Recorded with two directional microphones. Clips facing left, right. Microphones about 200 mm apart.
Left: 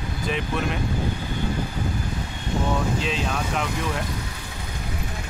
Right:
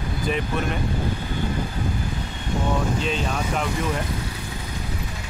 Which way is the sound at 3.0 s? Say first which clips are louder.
Right 1 dB; centre (ahead or behind).